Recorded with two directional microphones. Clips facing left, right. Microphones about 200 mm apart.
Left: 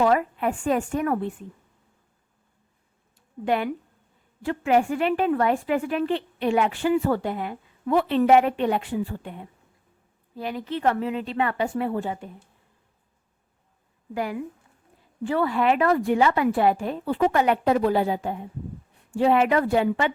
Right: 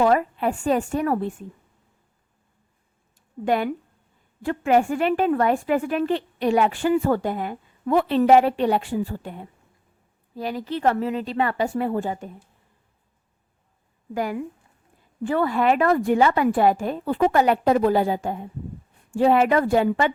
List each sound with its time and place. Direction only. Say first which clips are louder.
0.0 s a woman's voice: right 2 dB; 35° right (ahead or behind)
3.2 s a sound: right 2 dB; 45° right (ahead or behind)
4.4 s a woman's voice: right 2 dB; 45° right (ahead or behind)
14.1 s a woman's voice: right 2 dB; 45° right (ahead or behind)